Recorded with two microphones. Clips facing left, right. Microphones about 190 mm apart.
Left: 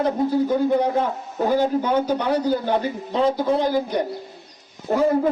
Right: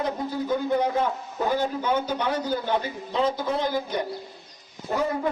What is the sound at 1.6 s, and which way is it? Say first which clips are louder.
A man's voice: left 5 dB; 35° left (ahead or behind).